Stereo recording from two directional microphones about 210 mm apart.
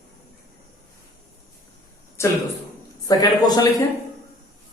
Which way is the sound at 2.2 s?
15° left (ahead or behind).